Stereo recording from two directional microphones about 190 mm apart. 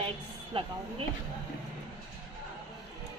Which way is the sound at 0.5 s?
25° right (ahead or behind).